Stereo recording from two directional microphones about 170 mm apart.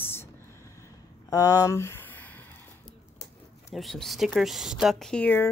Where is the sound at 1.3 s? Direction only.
20° left (ahead or behind).